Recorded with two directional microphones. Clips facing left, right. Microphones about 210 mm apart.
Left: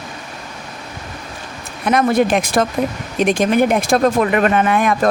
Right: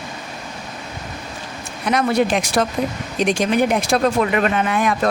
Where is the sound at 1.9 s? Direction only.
50° left (ahead or behind).